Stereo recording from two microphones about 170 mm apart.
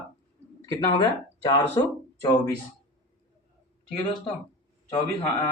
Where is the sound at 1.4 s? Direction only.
20° left (ahead or behind).